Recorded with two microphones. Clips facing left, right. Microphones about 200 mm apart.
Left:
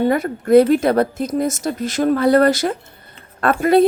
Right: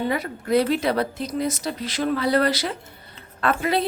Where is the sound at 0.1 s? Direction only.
50° left (ahead or behind).